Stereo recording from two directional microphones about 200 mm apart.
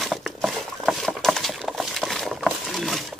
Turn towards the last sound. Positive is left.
turn(degrees=0)  # may be behind; listen again after turning